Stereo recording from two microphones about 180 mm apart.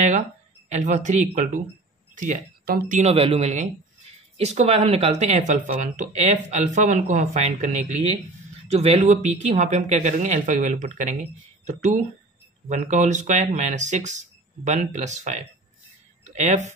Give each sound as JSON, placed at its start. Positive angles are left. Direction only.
{"t": 0.7, "sound": "speech", "side_deg": -40}
{"t": 3.0, "sound": "speech", "side_deg": -35}